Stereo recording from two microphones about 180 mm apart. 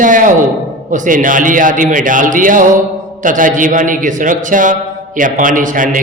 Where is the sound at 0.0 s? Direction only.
45° right (ahead or behind).